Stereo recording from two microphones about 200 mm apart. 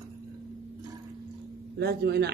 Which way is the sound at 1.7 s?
55° right (ahead or behind).